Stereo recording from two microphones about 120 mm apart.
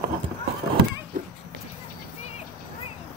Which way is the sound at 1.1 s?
90° right.